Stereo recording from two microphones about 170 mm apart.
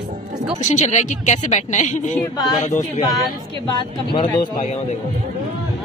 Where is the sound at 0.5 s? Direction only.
45° left (ahead or behind).